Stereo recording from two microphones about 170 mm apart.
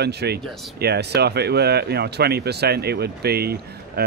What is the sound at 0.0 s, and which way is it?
Speech, 75° right (ahead or behind).